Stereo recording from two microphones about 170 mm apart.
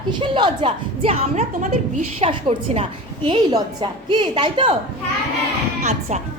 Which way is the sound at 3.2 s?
25° right (ahead or behind).